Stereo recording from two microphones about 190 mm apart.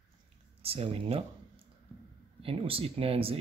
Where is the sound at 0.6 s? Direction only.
30° right (ahead or behind).